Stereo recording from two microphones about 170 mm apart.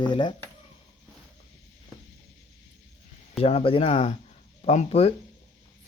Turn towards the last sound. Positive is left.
turn(degrees=35)  # may be behind; listen again after turning